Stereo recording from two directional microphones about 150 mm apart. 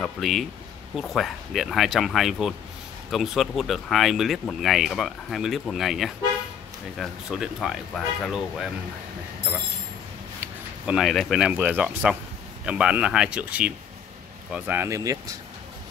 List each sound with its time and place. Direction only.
0.0 s speech: centre (ahead or behind)
11.0 s speech: centre (ahead or behind); by 15.1 s 20° right (ahead or behind)